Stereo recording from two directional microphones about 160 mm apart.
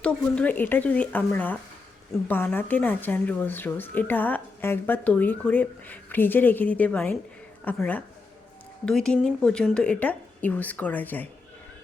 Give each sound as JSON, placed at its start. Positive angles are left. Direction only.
{"t": 0.0, "sound": "a woman's voice", "side_deg": 10}